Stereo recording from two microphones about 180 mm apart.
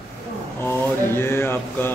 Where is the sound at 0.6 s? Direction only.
15° left (ahead or behind).